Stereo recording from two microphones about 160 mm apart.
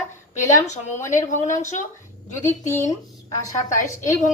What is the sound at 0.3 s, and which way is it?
A woman's voice, 45° left (ahead or behind).